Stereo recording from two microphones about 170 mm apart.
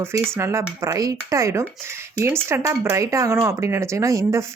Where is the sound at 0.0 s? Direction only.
15° right (ahead or behind).